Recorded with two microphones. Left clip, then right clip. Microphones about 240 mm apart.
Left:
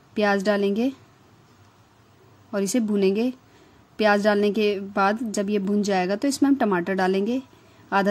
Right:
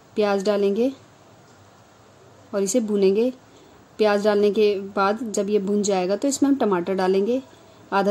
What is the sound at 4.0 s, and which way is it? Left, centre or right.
Speech, left.